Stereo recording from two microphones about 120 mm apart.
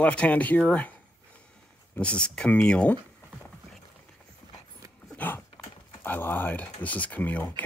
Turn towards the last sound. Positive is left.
turn(degrees=15)  # may be behind; listen again after turning